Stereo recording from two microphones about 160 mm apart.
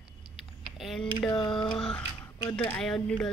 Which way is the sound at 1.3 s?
30° left (ahead or behind).